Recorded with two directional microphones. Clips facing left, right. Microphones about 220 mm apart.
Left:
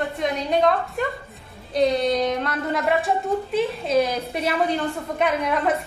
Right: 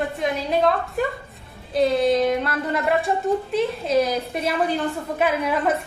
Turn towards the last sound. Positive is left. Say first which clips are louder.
# even
turn(degrees=0)  # may be behind; listen again after turning